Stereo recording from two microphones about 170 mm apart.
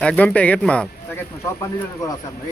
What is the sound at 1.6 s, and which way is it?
Speech, 20° left (ahead or behind).